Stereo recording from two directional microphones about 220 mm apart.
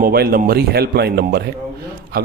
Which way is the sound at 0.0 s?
45° right (ahead or behind).